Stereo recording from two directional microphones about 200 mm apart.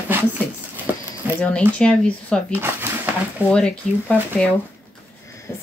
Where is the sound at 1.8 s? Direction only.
5° left (ahead or behind).